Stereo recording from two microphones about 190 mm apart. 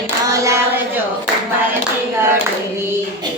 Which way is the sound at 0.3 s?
15° right (ahead or behind).